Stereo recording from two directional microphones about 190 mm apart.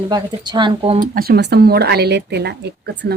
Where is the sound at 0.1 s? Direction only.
20° right (ahead or behind).